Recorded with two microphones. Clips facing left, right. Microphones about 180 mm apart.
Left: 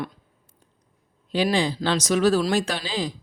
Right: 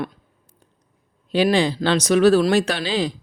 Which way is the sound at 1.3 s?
65° right (ahead or behind).